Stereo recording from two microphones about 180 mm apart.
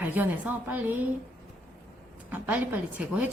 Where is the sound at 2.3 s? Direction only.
10° right (ahead or behind).